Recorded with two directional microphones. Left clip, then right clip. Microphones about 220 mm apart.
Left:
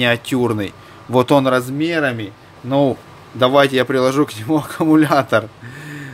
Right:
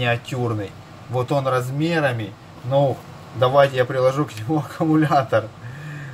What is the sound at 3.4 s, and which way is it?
A man's voice, 50° left (ahead or behind).